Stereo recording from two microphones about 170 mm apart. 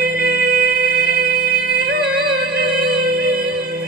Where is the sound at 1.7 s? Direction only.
65° right (ahead or behind).